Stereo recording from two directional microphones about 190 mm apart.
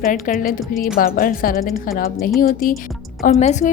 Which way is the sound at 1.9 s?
50° left (ahead or behind).